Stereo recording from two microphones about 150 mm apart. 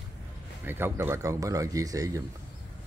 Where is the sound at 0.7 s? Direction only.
15° right (ahead or behind).